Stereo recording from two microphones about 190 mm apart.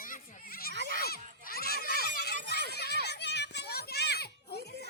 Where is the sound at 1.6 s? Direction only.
50° left (ahead or behind).